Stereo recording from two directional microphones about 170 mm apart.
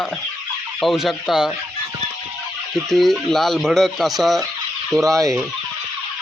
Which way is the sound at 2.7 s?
Centre (ahead or behind).